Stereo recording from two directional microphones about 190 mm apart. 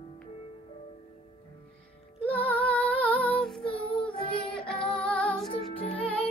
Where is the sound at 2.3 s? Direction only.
10° left (ahead or behind).